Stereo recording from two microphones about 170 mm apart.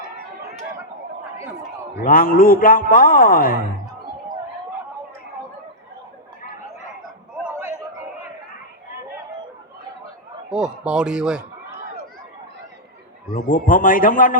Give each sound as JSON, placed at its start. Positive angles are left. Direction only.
{"t": 2.0, "sound": "a man's voice", "side_deg": 55}
{"t": 10.5, "sound": "speech", "side_deg": -5}
{"t": 13.3, "sound": "a man's voice", "side_deg": 55}